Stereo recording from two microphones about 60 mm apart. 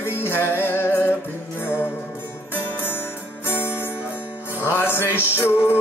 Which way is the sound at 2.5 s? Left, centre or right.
Left.